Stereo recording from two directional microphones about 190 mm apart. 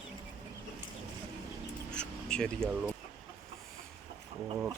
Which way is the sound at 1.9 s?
5° left (ahead or behind).